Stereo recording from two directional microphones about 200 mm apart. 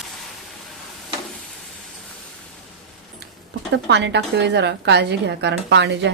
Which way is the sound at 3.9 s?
60° right (ahead or behind).